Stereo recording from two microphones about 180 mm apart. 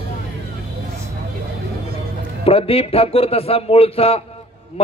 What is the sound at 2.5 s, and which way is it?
A man's voice, 30° left (ahead or behind).